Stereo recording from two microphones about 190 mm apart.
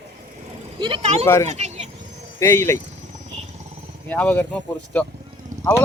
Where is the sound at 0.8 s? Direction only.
30° right (ahead or behind).